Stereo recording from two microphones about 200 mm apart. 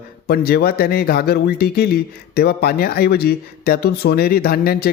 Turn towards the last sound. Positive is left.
turn(degrees=50)  # may be behind; listen again after turning